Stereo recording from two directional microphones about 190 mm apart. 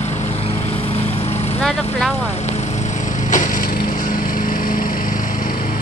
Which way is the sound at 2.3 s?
35° left (ahead or behind).